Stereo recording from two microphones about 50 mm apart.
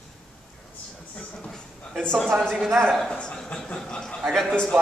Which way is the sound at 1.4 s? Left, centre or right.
Centre.